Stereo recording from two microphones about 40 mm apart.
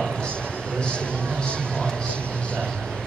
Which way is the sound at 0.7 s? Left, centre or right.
Left.